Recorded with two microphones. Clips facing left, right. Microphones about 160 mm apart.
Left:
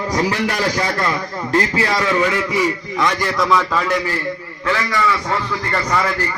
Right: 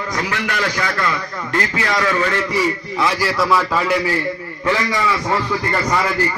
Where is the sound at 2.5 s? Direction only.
5° right (ahead or behind).